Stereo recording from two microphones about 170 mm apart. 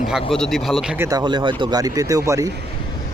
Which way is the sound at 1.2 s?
25° right (ahead or behind).